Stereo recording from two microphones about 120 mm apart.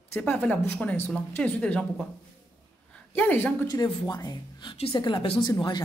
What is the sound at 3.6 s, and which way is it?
Speech, 30° left (ahead or behind).